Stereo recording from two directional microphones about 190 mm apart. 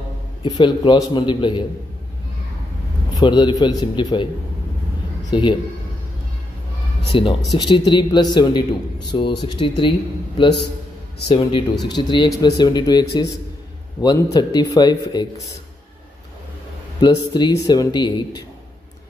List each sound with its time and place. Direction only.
0.4 s a man's voice: 25° left (ahead or behind)
3.2 s a man's voice: 25° left (ahead or behind)
5.3 s a man's voice: 25° left (ahead or behind)
7.2 s a man's voice: 25° left (ahead or behind)
17.0 s a man's voice: 20° left (ahead or behind)